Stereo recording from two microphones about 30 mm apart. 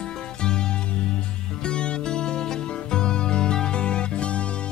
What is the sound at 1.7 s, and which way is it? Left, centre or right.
Music, left.